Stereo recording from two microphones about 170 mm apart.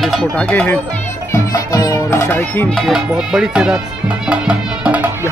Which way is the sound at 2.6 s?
Centre (ahead or behind).